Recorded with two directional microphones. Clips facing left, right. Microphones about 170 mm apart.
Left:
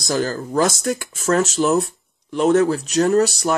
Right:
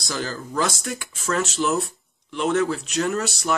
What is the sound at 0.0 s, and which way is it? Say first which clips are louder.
Speech: left 8 dB; 45° left (ahead or behind).